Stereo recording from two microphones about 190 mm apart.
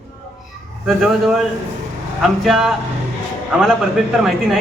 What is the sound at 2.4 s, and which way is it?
Speech, centre (ahead or behind).